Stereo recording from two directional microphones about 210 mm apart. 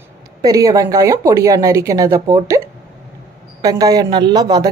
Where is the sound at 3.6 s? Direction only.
15° right (ahead or behind).